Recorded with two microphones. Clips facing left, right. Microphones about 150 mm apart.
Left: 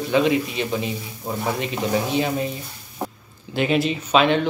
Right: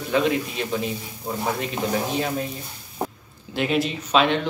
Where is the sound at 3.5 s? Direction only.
Centre (ahead or behind).